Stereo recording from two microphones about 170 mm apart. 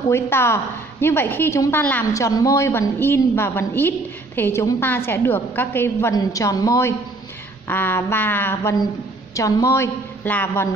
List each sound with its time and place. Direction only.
0.1 s a woman's voice: 15° left (ahead or behind)